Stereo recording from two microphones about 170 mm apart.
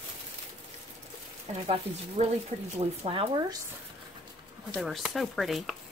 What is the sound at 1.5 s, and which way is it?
Speech, 35° right (ahead or behind).